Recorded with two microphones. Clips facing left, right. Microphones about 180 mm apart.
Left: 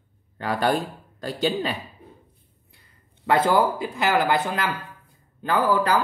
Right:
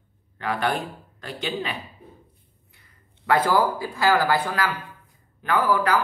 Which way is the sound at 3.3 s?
25° left (ahead or behind).